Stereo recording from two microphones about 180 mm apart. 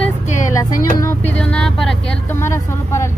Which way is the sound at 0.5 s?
20° left (ahead or behind).